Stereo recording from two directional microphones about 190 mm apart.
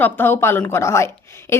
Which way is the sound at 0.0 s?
10° left (ahead or behind).